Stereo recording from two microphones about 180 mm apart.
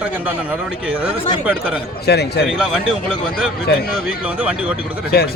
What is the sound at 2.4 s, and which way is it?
Speech, centre (ahead or behind).